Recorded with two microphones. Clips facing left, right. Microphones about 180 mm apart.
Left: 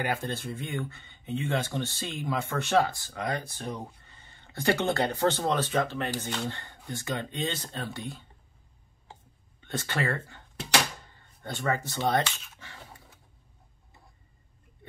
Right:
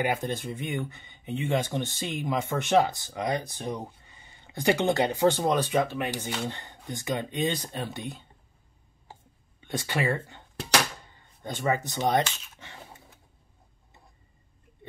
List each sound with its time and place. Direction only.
0.0 s speech: 15° right (ahead or behind)
9.6 s speech: 15° right (ahead or behind)
11.4 s speech: 15° right (ahead or behind)